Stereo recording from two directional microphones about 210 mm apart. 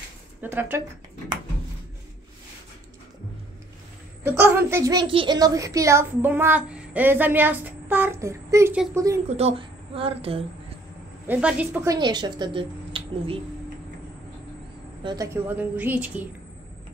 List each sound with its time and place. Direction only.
0.4 s a child's voice: 10° right (ahead or behind)
4.2 s a child's voice: 10° right (ahead or behind)
9.3 s speech: 30° right (ahead or behind)
11.2 s speech: 10° right (ahead or behind); by 13.4 s 25° right (ahead or behind)
15.0 s a child's voice: 15° right (ahead or behind)